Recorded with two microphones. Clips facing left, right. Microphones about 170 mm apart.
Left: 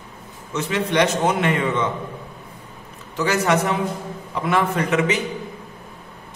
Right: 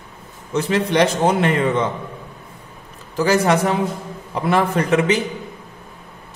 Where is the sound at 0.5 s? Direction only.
35° right (ahead or behind).